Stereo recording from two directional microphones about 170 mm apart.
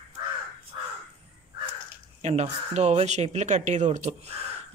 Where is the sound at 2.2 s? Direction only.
40° right (ahead or behind).